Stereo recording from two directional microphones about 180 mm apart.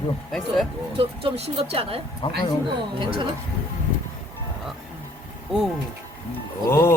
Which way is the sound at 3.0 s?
30° right (ahead or behind).